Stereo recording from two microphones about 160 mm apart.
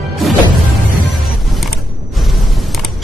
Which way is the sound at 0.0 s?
Centre (ahead or behind).